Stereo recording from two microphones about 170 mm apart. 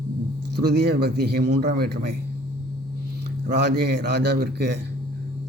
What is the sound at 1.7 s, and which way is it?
Speech, 70° right (ahead or behind).